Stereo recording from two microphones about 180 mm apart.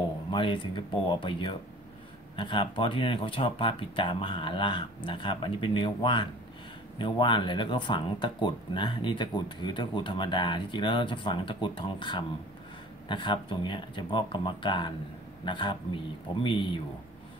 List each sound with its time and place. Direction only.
0.3 s speech: 25° left (ahead or behind)